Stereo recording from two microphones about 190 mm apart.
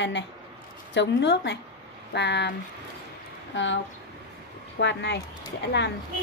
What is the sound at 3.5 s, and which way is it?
Speech, 75° left (ahead or behind).